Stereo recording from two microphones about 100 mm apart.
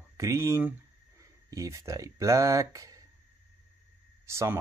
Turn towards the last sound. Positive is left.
turn(degrees=-30)  # may be behind; listen again after turning